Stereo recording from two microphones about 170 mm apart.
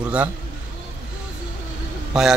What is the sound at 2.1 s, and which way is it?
Speech, 5° right (ahead or behind).